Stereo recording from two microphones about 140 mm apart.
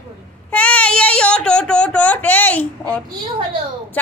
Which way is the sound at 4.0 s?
10° left (ahead or behind).